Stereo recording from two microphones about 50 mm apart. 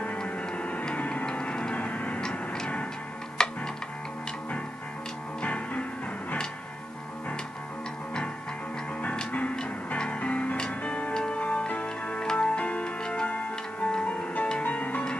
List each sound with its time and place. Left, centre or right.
0.2 s music: left
1.3 s a sound: left
3.4 s music: centre
5.4 s music: left
9.0 s music: centre
9.3 s music: left